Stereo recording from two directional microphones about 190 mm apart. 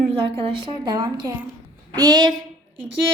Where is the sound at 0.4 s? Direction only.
25° right (ahead or behind).